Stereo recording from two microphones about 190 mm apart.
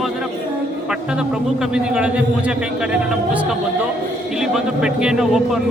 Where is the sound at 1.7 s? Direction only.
5° right (ahead or behind).